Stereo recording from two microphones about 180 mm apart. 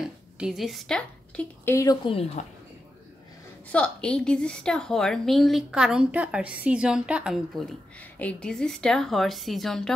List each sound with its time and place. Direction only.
0.0 s a woman's voice: centre (ahead or behind)
2.0 s speech: 30° left (ahead or behind)
3.7 s a woman's voice: 5° left (ahead or behind)